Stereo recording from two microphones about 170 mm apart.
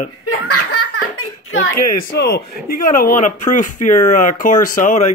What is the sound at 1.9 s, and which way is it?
Speech, 70° left (ahead or behind).